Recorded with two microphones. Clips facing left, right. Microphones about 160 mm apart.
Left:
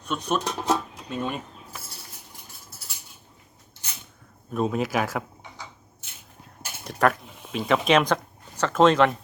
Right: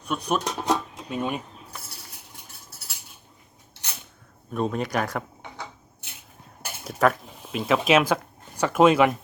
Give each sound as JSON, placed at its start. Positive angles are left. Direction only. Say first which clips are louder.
{"t": 0.0, "sound": "speech", "louder": "even", "side_deg": -10}
{"t": 0.4, "sound": "speech", "louder": "even", "side_deg": 5}
{"t": 1.1, "sound": "speech", "louder": "right 2 dB", "side_deg": -10}
{"t": 4.5, "sound": "speech", "louder": "left 1 dB", "side_deg": 0}
{"t": 5.4, "sound": "a sound", "louder": "right 4 dB", "side_deg": -60}
{"t": 6.8, "sound": "speech", "louder": "right 1 dB", "side_deg": 0}